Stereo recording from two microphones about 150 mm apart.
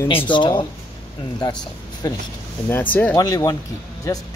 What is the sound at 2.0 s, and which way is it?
Speech, 25° left (ahead or behind).